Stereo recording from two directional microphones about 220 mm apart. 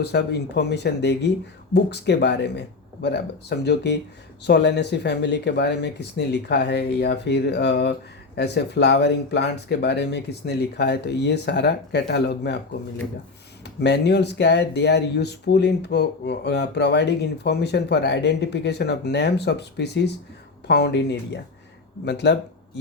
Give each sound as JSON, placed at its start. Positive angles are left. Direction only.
{"t": 0.0, "sound": "speech", "side_deg": 50}
{"t": 13.8, "sound": "speech", "side_deg": 50}